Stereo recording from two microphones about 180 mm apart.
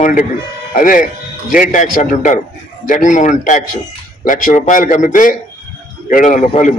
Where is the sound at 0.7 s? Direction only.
45° left (ahead or behind).